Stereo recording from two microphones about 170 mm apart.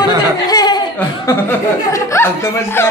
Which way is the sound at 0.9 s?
15° left (ahead or behind).